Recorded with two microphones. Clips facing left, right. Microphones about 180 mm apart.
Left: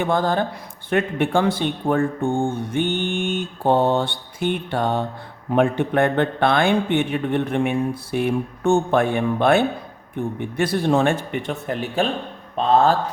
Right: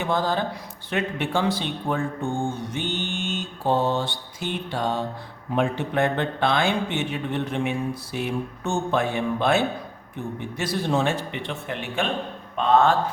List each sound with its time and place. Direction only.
0.0 s a man's voice: 50° left (ahead or behind); by 13.0 s 35° left (ahead or behind)